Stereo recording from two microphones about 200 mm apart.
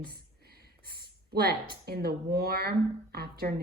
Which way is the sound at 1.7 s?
50° right (ahead or behind).